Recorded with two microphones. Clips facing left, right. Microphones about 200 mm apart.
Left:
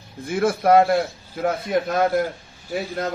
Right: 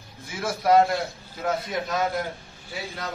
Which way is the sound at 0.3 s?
55° left (ahead or behind).